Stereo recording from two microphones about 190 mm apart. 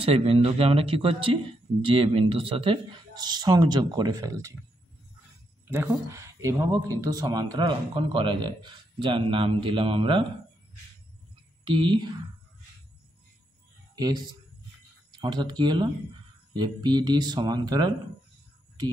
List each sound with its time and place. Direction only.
0.0 s speech: 30° right (ahead or behind)
5.7 s speech: 15° right (ahead or behind)
11.6 s speech: 25° right (ahead or behind)
13.9 s speech: 20° right (ahead or behind)